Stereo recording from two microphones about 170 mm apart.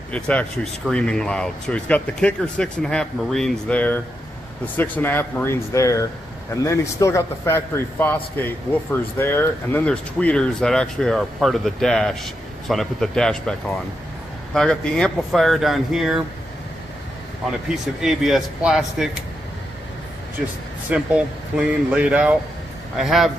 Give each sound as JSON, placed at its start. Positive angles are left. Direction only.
{"t": 0.1, "sound": "a man's voice", "side_deg": 5}
{"t": 18.0, "sound": "speech", "side_deg": 0}
{"t": 20.9, "sound": "speech", "side_deg": -5}